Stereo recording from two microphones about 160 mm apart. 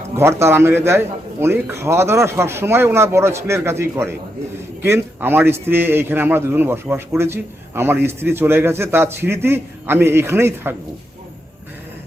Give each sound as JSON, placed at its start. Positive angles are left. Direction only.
{"t": 0.2, "sound": "a man's voice", "side_deg": -15}